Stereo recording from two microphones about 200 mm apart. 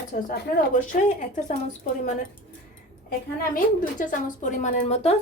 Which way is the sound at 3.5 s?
40° left (ahead or behind).